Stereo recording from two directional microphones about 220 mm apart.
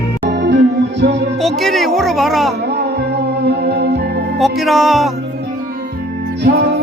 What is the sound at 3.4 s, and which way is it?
Music, 50° right (ahead or behind).